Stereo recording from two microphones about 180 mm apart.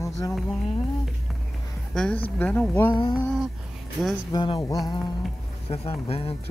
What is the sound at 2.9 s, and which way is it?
Speech, 25° left (ahead or behind).